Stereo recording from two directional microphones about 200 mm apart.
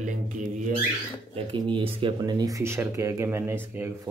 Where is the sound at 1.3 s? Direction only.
25° right (ahead or behind).